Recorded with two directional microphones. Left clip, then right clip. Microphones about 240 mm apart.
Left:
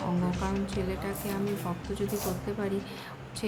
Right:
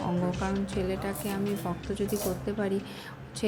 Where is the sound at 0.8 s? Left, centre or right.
Centre.